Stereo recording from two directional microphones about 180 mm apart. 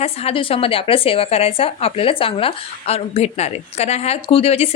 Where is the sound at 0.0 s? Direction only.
35° left (ahead or behind).